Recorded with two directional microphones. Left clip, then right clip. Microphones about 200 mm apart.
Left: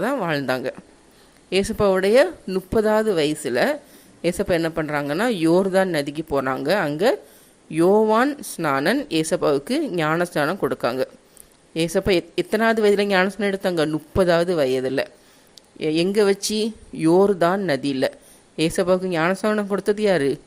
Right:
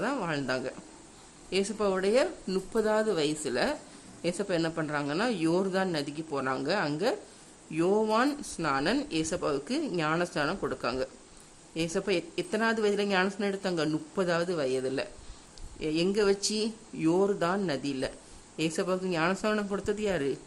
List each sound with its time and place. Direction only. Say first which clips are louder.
0.0 s speech: left 9 dB; 20° left (ahead or behind)